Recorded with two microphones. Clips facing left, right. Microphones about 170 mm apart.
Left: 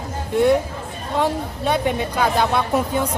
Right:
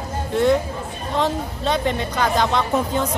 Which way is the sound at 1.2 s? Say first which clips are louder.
Left 1 dB; 10° left (ahead or behind).